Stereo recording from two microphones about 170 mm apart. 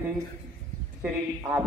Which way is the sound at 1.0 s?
10° right (ahead or behind).